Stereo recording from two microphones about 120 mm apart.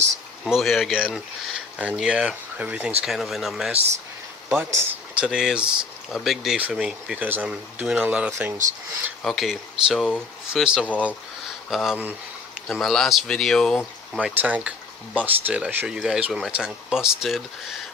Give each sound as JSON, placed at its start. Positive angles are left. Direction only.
{"t": 0.4, "sound": "speech", "side_deg": 0}
{"t": 4.4, "sound": "speech", "side_deg": -20}
{"t": 5.2, "sound": "speech", "side_deg": -5}
{"t": 9.2, "sound": "speech", "side_deg": 0}
{"t": 14.2, "sound": "speech", "side_deg": -10}